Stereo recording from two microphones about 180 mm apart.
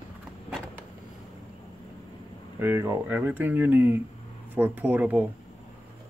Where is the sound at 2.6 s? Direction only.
15° right (ahead or behind).